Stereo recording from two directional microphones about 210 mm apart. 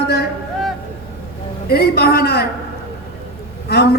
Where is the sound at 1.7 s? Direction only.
50° left (ahead or behind).